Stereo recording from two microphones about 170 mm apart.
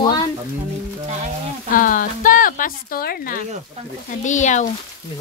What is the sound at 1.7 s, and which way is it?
Speech, 55° left (ahead or behind).